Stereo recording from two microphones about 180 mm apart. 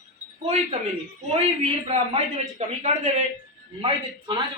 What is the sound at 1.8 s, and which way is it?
A man's voice, 35° right (ahead or behind).